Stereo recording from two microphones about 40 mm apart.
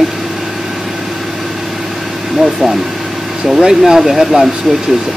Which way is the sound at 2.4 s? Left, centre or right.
Centre.